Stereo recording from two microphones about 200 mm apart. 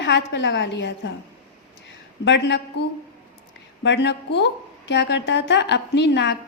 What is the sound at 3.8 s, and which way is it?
A woman's voice, 60° left (ahead or behind).